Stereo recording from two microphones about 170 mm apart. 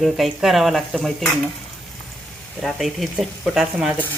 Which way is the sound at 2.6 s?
Centre (ahead or behind).